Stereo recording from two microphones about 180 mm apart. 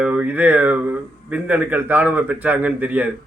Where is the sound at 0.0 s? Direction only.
10° right (ahead or behind).